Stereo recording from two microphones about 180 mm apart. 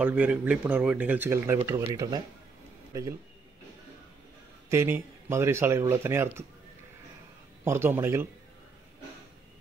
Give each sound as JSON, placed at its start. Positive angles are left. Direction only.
{"t": 0.0, "sound": "a man's voice", "side_deg": -5}
{"t": 4.6, "sound": "speech", "side_deg": -15}
{"t": 7.6, "sound": "speech", "side_deg": -15}